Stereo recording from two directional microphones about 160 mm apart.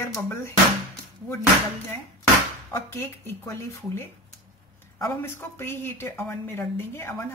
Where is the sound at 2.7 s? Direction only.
15° left (ahead or behind).